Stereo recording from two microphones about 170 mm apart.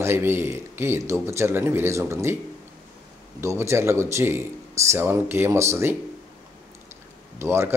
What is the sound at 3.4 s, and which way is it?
Speech, 15° right (ahead or behind).